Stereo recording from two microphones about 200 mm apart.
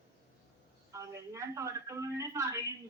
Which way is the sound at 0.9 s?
15° right (ahead or behind).